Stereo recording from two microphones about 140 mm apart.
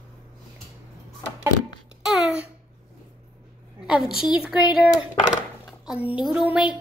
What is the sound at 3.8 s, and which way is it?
A woman's voice, 5° right (ahead or behind).